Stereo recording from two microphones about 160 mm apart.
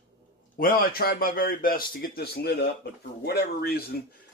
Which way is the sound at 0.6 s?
65° left (ahead or behind).